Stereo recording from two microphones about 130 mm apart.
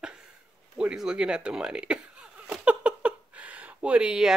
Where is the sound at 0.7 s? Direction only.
5° right (ahead or behind).